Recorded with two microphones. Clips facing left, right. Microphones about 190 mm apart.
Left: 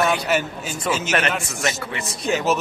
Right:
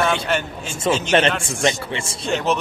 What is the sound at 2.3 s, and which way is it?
Speech, 5° left (ahead or behind).